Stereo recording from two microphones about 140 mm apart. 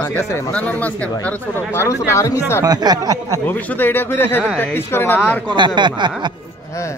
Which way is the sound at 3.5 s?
10° left (ahead or behind).